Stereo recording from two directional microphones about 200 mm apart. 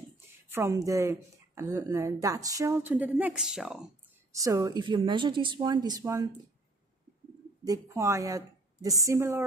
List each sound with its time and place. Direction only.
0.5 s a woman's voice: 15° right (ahead or behind)
4.3 s a woman's voice: 15° right (ahead or behind)
7.6 s a woman's voice: 15° right (ahead or behind)